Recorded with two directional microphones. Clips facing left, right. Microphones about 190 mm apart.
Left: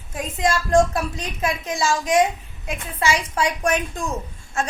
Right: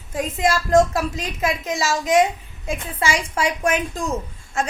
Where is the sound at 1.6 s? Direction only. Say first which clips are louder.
Even; 20° right (ahead or behind).